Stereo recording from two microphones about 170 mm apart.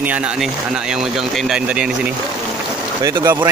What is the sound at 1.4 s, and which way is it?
Speech, 5° right (ahead or behind).